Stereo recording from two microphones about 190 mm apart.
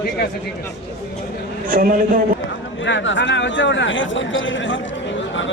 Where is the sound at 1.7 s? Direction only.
45° right (ahead or behind).